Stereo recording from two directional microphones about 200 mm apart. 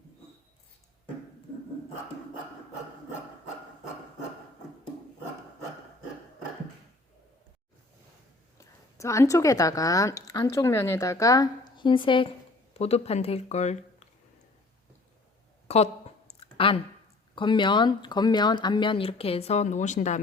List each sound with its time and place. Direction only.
8.5 s speech: 15° left (ahead or behind); by 13.7 s 35° left (ahead or behind)
15.6 s a sound: 30° left (ahead or behind)
16.6 s speech: 25° left (ahead or behind)